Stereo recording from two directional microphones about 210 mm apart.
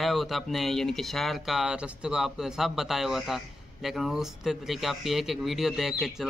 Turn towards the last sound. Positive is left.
turn(degrees=0)  # may be behind; listen again after turning